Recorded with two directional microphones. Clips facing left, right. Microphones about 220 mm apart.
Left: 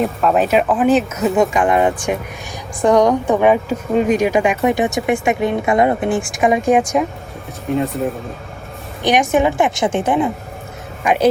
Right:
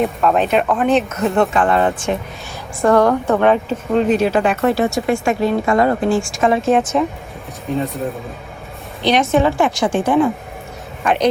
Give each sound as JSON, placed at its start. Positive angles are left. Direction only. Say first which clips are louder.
{"t": 0.0, "sound": "speech", "louder": "even", "side_deg": 0}
{"t": 9.3, "sound": "a woman's voice", "louder": "even", "side_deg": 15}